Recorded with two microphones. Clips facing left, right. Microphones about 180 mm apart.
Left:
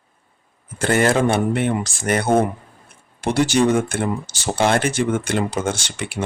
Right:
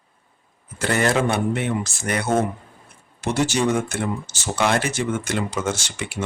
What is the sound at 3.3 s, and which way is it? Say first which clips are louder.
Speech: left 4 dB; 55° left (ahead or behind).